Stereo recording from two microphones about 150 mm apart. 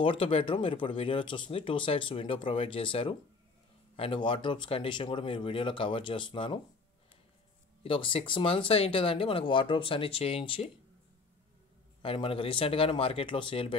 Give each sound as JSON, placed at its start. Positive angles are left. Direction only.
{"t": 0.0, "sound": "speech", "side_deg": 35}
{"t": 7.8, "sound": "speech", "side_deg": 35}
{"t": 12.0, "sound": "speech", "side_deg": 35}